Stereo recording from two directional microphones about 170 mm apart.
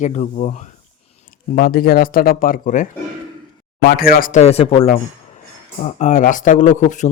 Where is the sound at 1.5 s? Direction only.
65° left (ahead or behind).